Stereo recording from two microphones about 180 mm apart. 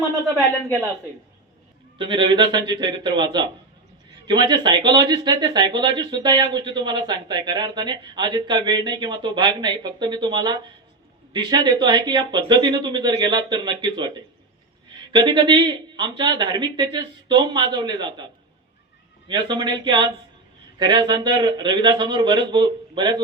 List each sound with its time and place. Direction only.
2.0 s speech: 25° right (ahead or behind)
15.1 s speech: 25° right (ahead or behind)
19.3 s speech: 25° right (ahead or behind)